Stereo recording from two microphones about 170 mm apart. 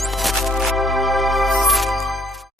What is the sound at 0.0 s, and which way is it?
Music, centre (ahead or behind).